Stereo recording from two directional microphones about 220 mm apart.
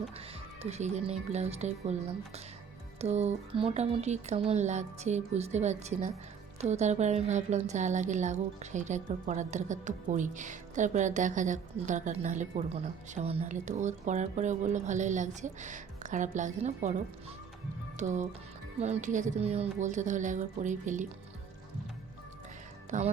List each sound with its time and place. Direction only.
0.6 s a woman's voice: 30° right (ahead or behind)
22.9 s a woman's voice: 35° right (ahead or behind)